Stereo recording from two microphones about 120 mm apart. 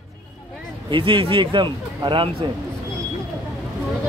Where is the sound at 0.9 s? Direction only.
45° right (ahead or behind).